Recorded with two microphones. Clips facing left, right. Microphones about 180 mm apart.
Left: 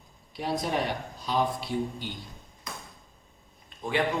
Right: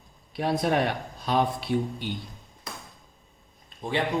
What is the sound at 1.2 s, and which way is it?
Speech, 60° right (ahead or behind).